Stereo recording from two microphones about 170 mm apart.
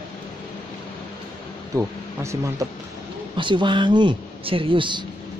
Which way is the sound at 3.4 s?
30° right (ahead or behind).